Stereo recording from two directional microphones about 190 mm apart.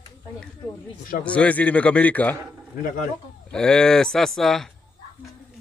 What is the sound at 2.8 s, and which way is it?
Speech, 45° left (ahead or behind).